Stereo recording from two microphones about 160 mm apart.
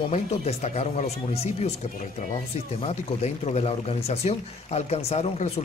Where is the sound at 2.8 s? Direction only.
40° left (ahead or behind).